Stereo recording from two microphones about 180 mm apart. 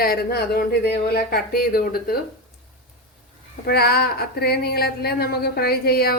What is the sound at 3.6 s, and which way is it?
Speech, 60° left (ahead or behind).